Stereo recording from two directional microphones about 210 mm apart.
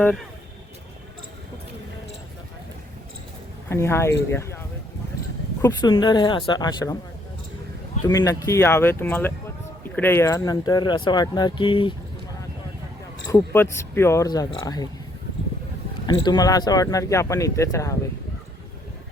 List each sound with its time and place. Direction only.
0.0 s speech: 10° left (ahead or behind)
3.7 s speech: 10° left (ahead or behind)
5.6 s speech: 20° left (ahead or behind)
8.0 s speech: 15° left (ahead or behind)
13.3 s speech: 10° left (ahead or behind)
16.0 s speech: 20° left (ahead or behind)